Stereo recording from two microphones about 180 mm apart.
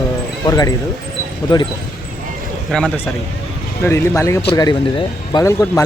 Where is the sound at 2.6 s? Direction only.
5° left (ahead or behind).